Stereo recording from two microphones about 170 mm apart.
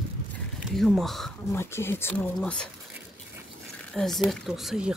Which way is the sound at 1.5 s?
15° left (ahead or behind).